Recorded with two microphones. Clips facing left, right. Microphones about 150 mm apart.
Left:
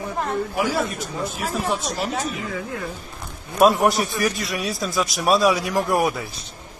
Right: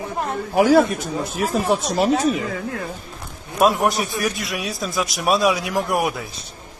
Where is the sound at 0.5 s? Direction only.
70° right (ahead or behind).